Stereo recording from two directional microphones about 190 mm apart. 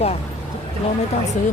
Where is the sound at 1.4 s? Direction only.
40° left (ahead or behind).